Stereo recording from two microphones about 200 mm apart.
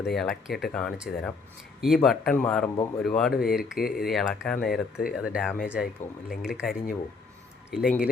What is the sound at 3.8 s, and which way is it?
Speech, 50° left (ahead or behind).